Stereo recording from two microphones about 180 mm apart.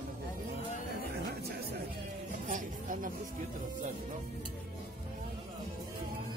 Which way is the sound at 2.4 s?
45° right (ahead or behind).